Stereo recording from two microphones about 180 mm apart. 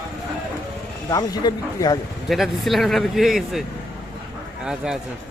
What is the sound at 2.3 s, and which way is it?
Speech, centre (ahead or behind).